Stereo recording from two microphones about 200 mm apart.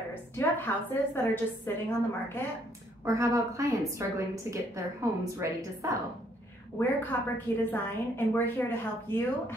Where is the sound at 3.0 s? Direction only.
15° right (ahead or behind).